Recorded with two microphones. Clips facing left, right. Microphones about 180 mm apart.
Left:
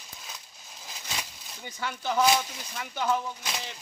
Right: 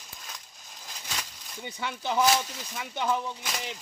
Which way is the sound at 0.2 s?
5° left (ahead or behind).